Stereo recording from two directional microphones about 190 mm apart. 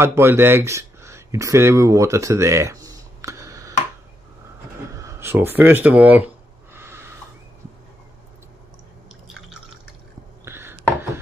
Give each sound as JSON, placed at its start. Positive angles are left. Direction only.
{"t": 0.0, "sound": "speech", "side_deg": -15}
{"t": 4.9, "sound": "a sound", "side_deg": -15}
{"t": 10.4, "sound": "chopping", "side_deg": -10}